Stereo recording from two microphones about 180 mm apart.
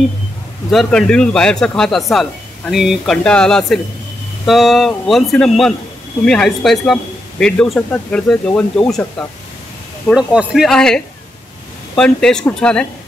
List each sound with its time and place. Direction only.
0.7 s a man's voice: centre (ahead or behind)
10.0 s a man's voice: 5° right (ahead or behind)